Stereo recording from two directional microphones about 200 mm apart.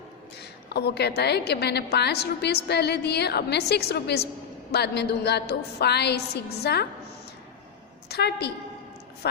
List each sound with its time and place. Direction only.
0.7 s a woman's voice: 55° left (ahead or behind)
8.1 s a woman's voice: 55° left (ahead or behind)